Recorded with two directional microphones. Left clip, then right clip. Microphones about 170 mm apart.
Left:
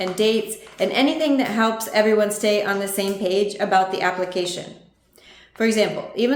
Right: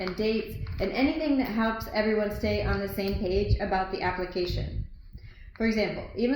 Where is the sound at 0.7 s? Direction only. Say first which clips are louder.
Left 8 dB; 45° left (ahead or behind).